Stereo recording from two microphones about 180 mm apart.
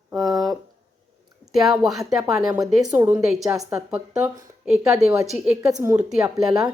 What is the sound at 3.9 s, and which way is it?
A woman's voice, 5° right (ahead or behind).